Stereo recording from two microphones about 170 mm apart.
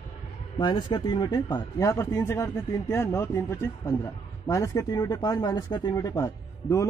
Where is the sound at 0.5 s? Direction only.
25° left (ahead or behind).